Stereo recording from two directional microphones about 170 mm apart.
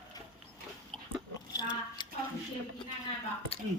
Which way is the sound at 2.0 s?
25° left (ahead or behind).